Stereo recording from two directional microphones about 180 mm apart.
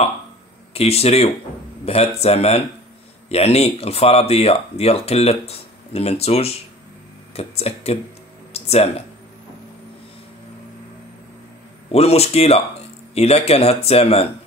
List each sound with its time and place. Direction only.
0.7 s speech: 35° left (ahead or behind)
8.5 s a sound: 35° left (ahead or behind)
11.9 s speech: 35° left (ahead or behind)